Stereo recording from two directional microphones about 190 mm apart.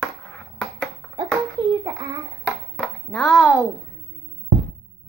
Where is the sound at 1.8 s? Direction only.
20° right (ahead or behind).